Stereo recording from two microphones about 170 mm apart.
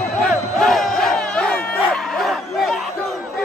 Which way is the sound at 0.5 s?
Centre (ahead or behind).